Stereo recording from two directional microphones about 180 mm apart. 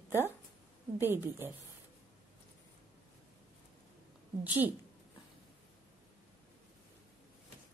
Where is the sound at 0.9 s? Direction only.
10° right (ahead or behind).